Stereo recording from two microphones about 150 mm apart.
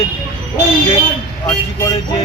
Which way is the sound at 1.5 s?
25° left (ahead or behind).